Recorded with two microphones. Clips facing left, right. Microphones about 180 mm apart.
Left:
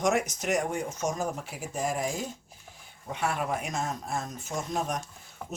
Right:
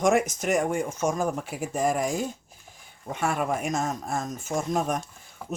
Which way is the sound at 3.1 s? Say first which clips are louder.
Right 3 dB; 45° right (ahead or behind).